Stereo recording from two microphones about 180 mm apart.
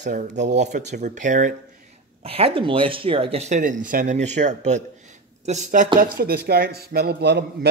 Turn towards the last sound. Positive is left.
turn(degrees=-65)  # may be behind; listen again after turning